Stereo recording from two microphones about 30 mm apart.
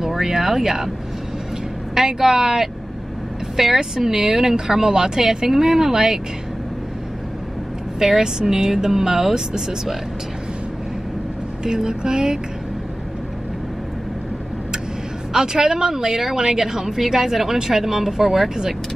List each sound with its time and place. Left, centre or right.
0.2 s a woman's voice: centre
2.0 s a woman's voice: centre
8.0 s a woman's voice: right
11.6 s speech: right
15.3 s a woman's voice: centre